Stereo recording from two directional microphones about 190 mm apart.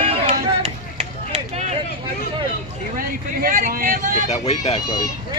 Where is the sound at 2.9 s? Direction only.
50° right (ahead or behind).